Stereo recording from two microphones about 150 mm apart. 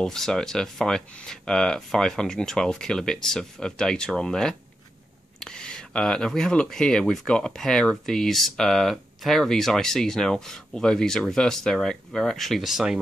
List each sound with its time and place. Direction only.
0.0 s speech: 5° left (ahead or behind)